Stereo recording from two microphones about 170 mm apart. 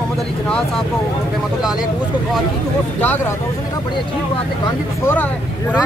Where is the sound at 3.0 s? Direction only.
10° left (ahead or behind).